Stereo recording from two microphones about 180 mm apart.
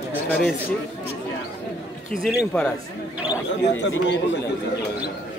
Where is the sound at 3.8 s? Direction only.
80° left.